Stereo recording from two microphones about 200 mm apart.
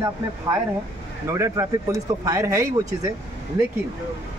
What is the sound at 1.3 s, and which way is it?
Speech, 15° right (ahead or behind).